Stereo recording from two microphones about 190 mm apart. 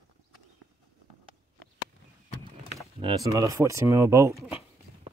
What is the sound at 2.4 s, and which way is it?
Speech, 20° right (ahead or behind).